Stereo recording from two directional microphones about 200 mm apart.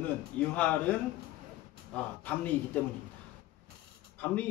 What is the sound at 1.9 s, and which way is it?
Speech, 5° left (ahead or behind).